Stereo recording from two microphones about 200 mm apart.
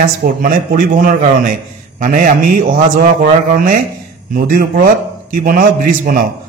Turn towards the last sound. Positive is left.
turn(degrees=-45)  # may be behind; listen again after turning